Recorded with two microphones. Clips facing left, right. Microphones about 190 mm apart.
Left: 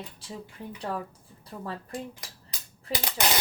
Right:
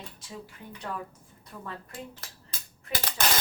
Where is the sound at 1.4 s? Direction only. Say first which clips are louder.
Left 4 dB; 30° left (ahead or behind).